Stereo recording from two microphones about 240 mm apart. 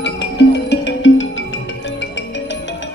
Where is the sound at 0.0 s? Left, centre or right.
Left.